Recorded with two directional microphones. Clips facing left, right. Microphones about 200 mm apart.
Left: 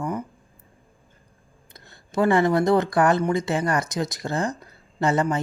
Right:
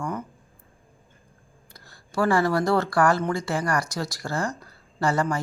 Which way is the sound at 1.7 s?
20° left (ahead or behind).